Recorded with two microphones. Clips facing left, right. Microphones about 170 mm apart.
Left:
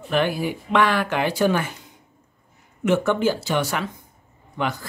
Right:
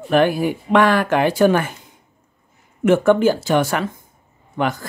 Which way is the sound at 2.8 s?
50° right (ahead or behind).